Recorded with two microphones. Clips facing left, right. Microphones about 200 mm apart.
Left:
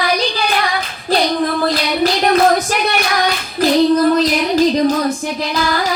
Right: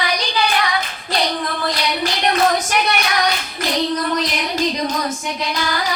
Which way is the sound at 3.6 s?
35° left (ahead or behind).